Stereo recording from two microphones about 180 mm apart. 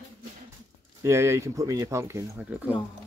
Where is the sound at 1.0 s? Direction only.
15° right (ahead or behind).